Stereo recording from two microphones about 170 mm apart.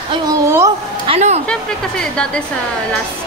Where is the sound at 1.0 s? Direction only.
35° right (ahead or behind).